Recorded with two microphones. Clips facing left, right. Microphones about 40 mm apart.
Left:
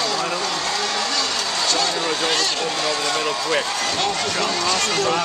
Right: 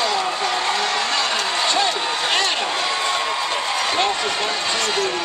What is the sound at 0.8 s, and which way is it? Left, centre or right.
Vehicle, centre.